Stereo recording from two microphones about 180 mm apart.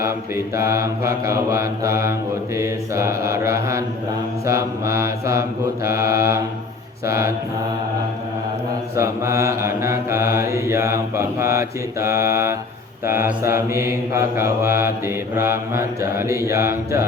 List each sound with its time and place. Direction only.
0.0 s mantra: 15° right (ahead or behind)
9.0 s mantra: 15° right (ahead or behind)